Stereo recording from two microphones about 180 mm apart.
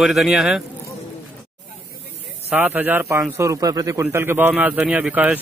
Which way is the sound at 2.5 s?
10° right (ahead or behind).